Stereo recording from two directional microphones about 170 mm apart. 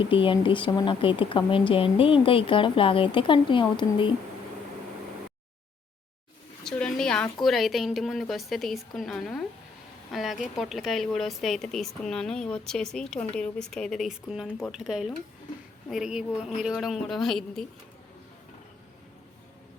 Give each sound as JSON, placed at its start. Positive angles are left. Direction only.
{"t": 0.0, "sound": "speech", "side_deg": 30}
{"t": 6.7, "sound": "a sound", "side_deg": 5}
{"t": 7.4, "sound": "a woman's voice", "side_deg": 0}